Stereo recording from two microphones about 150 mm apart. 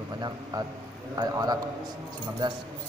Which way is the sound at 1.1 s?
25° right (ahead or behind).